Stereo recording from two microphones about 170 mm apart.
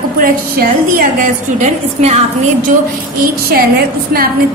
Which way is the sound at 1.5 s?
40° right (ahead or behind).